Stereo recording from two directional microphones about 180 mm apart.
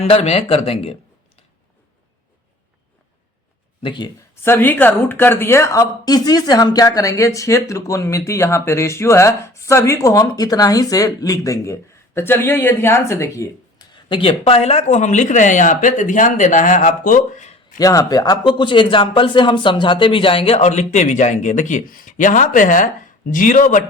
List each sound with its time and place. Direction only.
0.0 s speech: 35° left (ahead or behind)
3.8 s speech: 25° left (ahead or behind)
4.4 s speech: 10° left (ahead or behind); by 17.6 s 40° left (ahead or behind)
17.7 s speech: 20° left (ahead or behind); by 23.8 s 45° left (ahead or behind)